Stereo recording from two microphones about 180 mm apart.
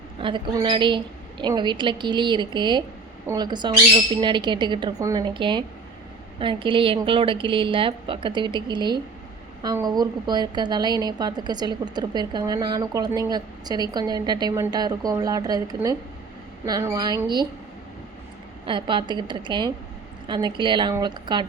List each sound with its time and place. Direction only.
0.2 s a woman's voice: 25° right (ahead or behind)
18.6 s a woman's voice: 25° right (ahead or behind)